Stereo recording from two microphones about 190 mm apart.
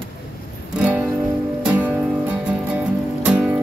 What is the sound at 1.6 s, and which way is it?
Music, 5° right (ahead or behind).